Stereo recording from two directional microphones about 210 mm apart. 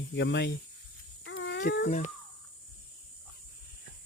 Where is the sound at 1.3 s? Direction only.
60° left (ahead or behind).